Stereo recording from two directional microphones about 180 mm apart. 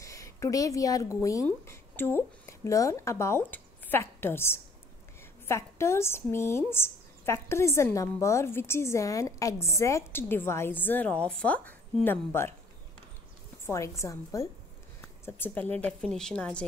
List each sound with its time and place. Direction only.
0.0 s a woman's voice: 15° left (ahead or behind)
13.7 s a woman's voice: 15° left (ahead or behind)